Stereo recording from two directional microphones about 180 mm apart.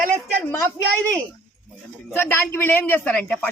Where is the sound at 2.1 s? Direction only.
10° left (ahead or behind).